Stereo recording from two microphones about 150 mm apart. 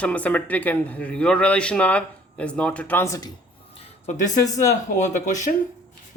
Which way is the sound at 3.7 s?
50° left (ahead or behind).